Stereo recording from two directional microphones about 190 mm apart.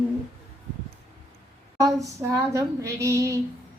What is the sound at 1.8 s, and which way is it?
A woman's voice, 15° right (ahead or behind).